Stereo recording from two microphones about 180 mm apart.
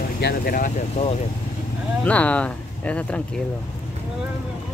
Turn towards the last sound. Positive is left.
turn(degrees=5)  # may be behind; listen again after turning